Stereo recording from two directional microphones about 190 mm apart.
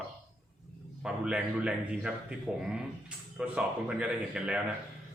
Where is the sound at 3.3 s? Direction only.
5° right (ahead or behind).